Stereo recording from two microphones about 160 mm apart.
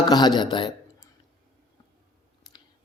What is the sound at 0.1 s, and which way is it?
Speech, 25° left (ahead or behind).